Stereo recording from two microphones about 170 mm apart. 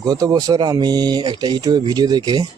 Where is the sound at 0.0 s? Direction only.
20° right (ahead or behind).